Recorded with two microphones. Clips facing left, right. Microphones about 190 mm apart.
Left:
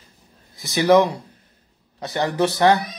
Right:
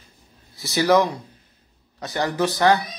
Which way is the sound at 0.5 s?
15° left (ahead or behind).